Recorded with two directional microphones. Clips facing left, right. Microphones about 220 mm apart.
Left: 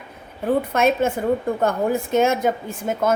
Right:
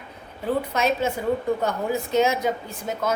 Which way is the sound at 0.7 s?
50° left (ahead or behind).